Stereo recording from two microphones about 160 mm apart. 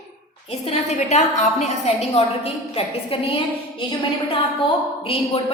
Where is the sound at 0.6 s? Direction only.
40° left (ahead or behind).